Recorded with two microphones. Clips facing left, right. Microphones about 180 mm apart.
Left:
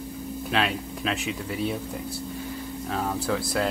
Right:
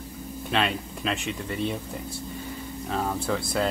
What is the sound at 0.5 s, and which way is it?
Speech, centre (ahead or behind).